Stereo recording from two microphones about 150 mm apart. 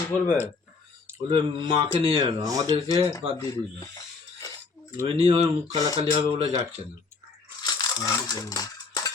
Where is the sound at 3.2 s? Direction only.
45° right (ahead or behind).